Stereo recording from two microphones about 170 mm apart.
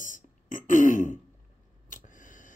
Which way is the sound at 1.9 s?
50° left (ahead or behind).